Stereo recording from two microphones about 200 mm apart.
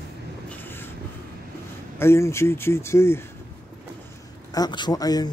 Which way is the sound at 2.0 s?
15° left (ahead or behind).